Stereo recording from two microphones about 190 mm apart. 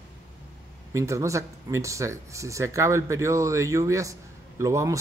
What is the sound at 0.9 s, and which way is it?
Speech, 15° right (ahead or behind).